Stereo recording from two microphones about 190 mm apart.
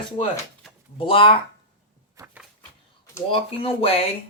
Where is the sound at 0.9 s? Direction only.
30° left (ahead or behind).